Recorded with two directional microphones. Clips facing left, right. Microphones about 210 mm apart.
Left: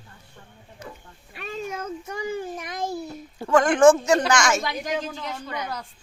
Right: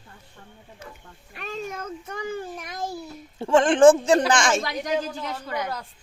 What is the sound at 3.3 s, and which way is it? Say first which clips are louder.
A woman's voice: right 1 dB; 25° right (ahead or behind).